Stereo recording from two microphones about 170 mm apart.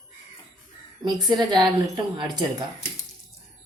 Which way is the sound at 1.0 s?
25° right (ahead or behind).